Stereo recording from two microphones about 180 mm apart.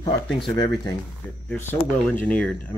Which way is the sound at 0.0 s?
20° left (ahead or behind).